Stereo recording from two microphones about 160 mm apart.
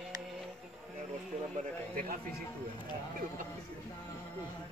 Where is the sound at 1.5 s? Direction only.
55° right (ahead or behind).